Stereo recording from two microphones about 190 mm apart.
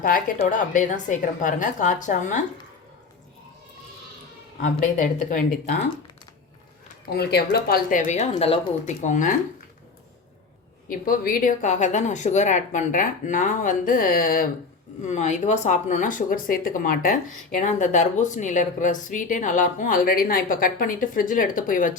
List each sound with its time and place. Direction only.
0.3 s a woman's voice: 40° left (ahead or behind)
4.6 s speech: 45° left (ahead or behind)
7.1 s speech: 60° left (ahead or behind); by 9.0 s 30° left (ahead or behind)
9.0 s speech: 45° left (ahead or behind)
10.8 s speech: 50° left (ahead or behind)
15.0 s speech: 40° left (ahead or behind)